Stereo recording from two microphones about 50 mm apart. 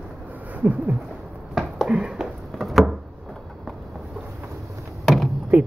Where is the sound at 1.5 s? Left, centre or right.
Centre.